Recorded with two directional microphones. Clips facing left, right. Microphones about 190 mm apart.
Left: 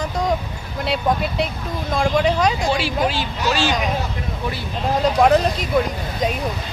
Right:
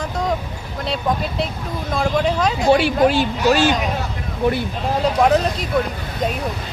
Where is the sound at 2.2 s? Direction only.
Centre (ahead or behind).